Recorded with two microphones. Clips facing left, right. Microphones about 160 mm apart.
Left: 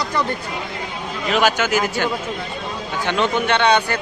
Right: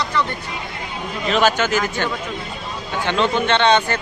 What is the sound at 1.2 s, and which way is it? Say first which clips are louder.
Speech: right 1 dB; 10° left (ahead or behind).